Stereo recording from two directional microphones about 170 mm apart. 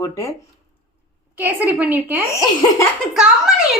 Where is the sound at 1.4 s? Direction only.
10° right (ahead or behind).